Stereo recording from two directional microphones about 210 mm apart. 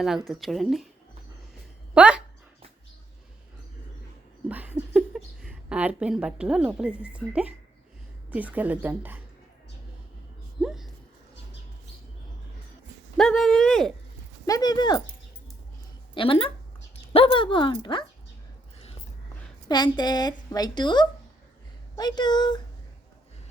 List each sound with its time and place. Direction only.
0.3 s speech: centre (ahead or behind)
2.0 s speech: 5° right (ahead or behind)
4.4 s a sound: 5° right (ahead or behind)
7.0 s a woman's voice: 5° right (ahead or behind)
10.6 s a sound: centre (ahead or behind)
13.1 s speech: centre (ahead or behind)
14.4 s a woman's voice: 20° left (ahead or behind)
16.1 s a woman's voice: 25° left (ahead or behind)
19.6 s a woman's voice: 20° left (ahead or behind)